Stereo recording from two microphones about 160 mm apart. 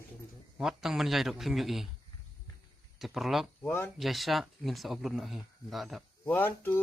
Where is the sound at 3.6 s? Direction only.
15° left (ahead or behind).